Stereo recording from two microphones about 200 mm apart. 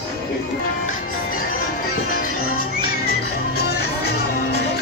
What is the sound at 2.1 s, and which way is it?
Music, 45° left (ahead or behind).